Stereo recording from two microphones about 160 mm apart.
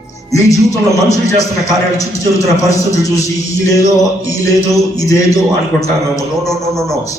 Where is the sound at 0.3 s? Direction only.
20° left (ahead or behind).